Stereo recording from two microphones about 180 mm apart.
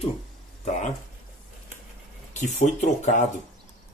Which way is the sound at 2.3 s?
40° left (ahead or behind).